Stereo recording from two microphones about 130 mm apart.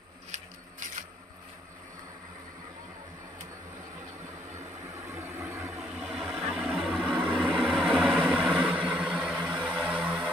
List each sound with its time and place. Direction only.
5.2 s vehicle: 15° right (ahead or behind)
5.7 s vehicle: centre (ahead or behind)
8.5 s vehicle: 10° right (ahead or behind)